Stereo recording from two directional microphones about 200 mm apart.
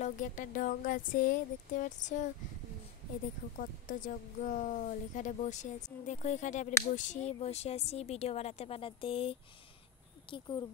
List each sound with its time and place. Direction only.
0.0 s speech: 40° left (ahead or behind)
3.5 s speech: 40° left (ahead or behind); by 10.6 s 20° left (ahead or behind)